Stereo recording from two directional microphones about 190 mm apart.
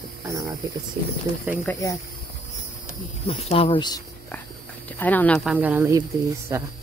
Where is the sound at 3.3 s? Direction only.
30° left (ahead or behind).